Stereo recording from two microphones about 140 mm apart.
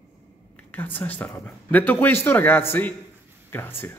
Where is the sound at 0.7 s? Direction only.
15° left (ahead or behind).